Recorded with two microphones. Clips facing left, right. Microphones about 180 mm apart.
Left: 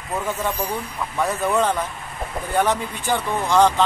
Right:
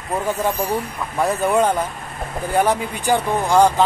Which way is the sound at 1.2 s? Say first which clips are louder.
Right 4 dB; 10° right (ahead or behind).